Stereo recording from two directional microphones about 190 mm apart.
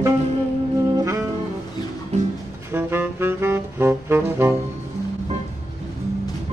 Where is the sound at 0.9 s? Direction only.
15° right (ahead or behind).